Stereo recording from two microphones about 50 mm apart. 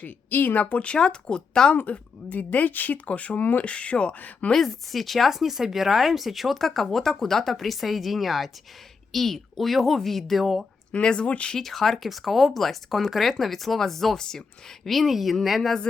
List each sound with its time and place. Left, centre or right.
0.0 s speech: left; by 1.7 s centre
1.7 s speech: left
4.5 s speech: centre
10.9 s speech: centre
11.5 s speech: centre